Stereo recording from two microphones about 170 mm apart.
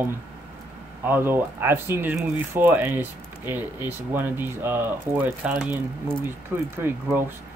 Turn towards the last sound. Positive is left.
turn(degrees=-15)  # may be behind; listen again after turning